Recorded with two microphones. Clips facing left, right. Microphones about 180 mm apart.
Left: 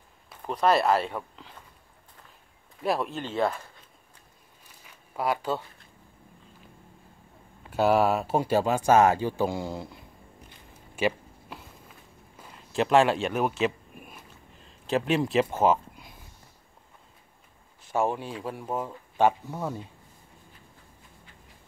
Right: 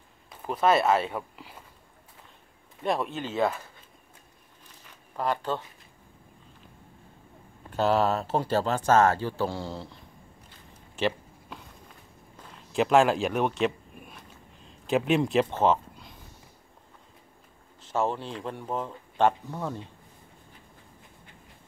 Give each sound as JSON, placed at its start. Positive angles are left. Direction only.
{"t": 0.5, "sound": "speech", "side_deg": -5}
{"t": 2.8, "sound": "speech", "side_deg": 0}
{"t": 4.8, "sound": "a sound", "side_deg": 10}
{"t": 7.7, "sound": "speech", "side_deg": 10}
{"t": 11.0, "sound": "a sound", "side_deg": 10}
{"t": 17.8, "sound": "speech", "side_deg": 10}